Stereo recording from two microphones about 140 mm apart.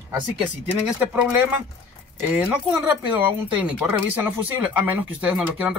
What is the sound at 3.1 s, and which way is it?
Speech, 10° right (ahead or behind).